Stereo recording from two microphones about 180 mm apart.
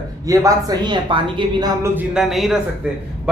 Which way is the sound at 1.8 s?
5° right (ahead or behind).